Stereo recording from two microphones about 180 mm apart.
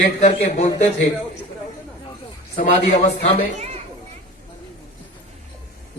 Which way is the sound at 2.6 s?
40° left (ahead or behind).